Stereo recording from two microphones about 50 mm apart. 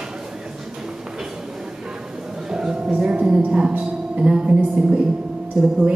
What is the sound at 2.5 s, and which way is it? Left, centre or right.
Speech, centre.